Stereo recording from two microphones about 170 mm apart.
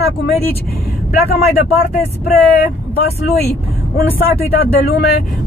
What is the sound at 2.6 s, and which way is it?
Speech, 70° left (ahead or behind).